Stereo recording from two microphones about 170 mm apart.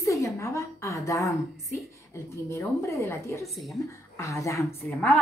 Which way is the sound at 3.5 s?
Centre (ahead or behind).